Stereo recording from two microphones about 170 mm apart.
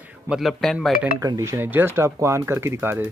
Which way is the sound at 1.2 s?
20° right (ahead or behind).